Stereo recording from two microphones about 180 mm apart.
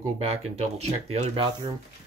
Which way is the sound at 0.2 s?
35° right (ahead or behind).